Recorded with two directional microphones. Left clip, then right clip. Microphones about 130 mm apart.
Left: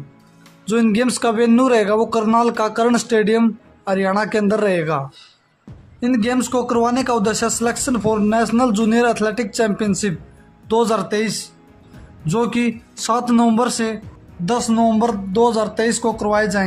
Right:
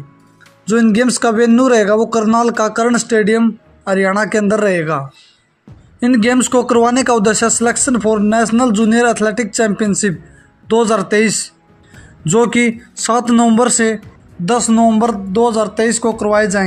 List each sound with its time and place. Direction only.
0.7 s speech: 15° right (ahead or behind)
5.9 s speech: 35° right (ahead or behind)
11.1 s speech: 30° right (ahead or behind)